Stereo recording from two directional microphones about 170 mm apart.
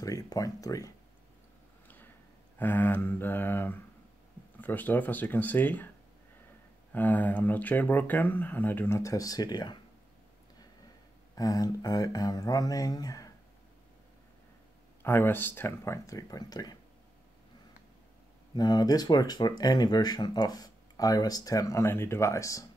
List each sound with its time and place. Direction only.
0.0 s speech: 20° left (ahead or behind)
2.6 s speech: 10° left (ahead or behind)
6.9 s speech: 10° left (ahead or behind)
11.3 s speech: 20° left (ahead or behind)
15.0 s speech: 15° left (ahead or behind)
18.5 s speech: 25° left (ahead or behind)